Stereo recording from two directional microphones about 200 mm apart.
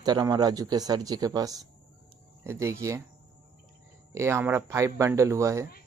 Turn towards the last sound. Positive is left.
turn(degrees=-15)  # may be behind; listen again after turning